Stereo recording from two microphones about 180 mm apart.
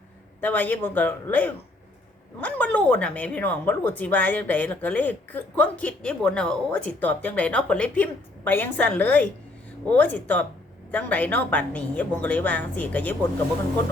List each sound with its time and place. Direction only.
0.4 s a woman's voice: 10° left (ahead or behind)